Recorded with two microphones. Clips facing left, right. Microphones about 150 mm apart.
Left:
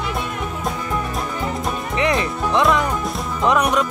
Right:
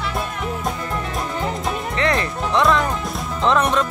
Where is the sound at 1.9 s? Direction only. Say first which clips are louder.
Left 2 dB; 15° left (ahead or behind).